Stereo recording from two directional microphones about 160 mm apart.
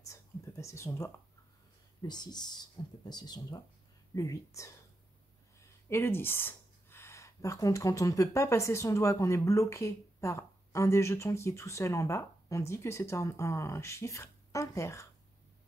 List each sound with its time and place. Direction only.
0.0 s a sound: 20° left (ahead or behind)
2.0 s speech: 25° left (ahead or behind)
5.9 s speech: 15° left (ahead or behind)